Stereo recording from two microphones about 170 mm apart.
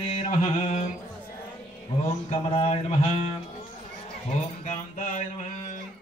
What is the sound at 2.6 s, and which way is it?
Speech, 35° left (ahead or behind).